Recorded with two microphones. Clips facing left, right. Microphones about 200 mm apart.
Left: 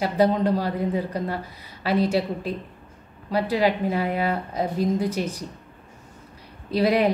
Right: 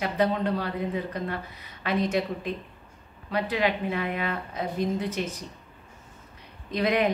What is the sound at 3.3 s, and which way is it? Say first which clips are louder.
Speech: left 4 dB; 35° left (ahead or behind).